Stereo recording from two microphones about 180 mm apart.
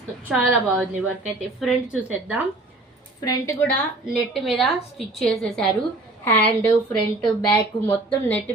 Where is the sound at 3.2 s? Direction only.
20° left (ahead or behind).